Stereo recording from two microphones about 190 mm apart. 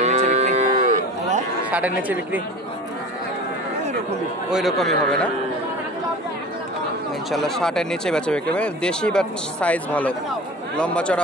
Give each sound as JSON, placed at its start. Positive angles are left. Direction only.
{"t": 0.0, "sound": "cattle", "side_deg": -35}
{"t": 2.0, "sound": "a woman's voice", "side_deg": -10}
{"t": 4.5, "sound": "speech", "side_deg": 0}
{"t": 7.2, "sound": "speech", "side_deg": 0}